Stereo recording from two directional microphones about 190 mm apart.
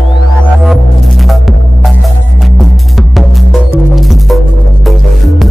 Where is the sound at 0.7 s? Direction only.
Centre (ahead or behind).